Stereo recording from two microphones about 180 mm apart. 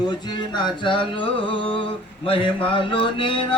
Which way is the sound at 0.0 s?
25° left (ahead or behind).